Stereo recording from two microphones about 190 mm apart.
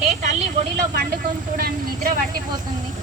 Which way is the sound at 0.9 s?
50° right (ahead or behind).